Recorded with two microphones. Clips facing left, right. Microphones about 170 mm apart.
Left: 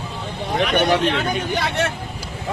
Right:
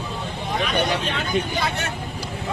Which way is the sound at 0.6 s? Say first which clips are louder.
Left 6 dB; 65° left (ahead or behind).